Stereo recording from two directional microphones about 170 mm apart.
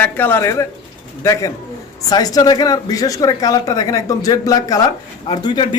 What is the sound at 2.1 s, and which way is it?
A man's voice, 20° left (ahead or behind).